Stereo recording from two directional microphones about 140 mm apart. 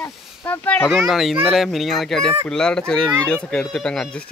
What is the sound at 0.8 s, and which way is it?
Speech, centre (ahead or behind).